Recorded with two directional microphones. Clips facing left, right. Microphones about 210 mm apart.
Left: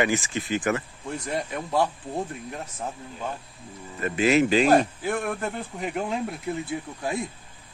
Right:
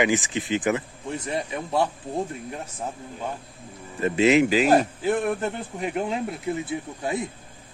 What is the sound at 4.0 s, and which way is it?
Speech, 20° right (ahead or behind).